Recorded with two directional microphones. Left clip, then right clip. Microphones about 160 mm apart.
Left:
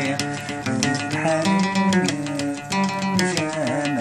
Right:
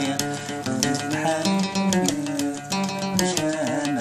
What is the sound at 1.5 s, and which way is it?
Music, 50° right (ahead or behind).